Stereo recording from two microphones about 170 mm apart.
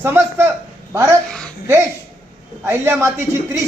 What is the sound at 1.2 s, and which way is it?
Speech, 5° left (ahead or behind).